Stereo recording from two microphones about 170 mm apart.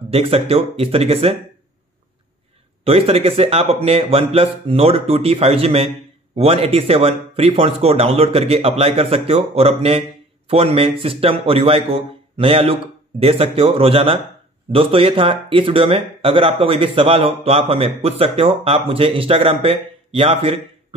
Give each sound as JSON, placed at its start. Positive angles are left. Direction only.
{"t": 0.1, "sound": "speech", "side_deg": -35}
{"t": 2.8, "sound": "speech", "side_deg": -35}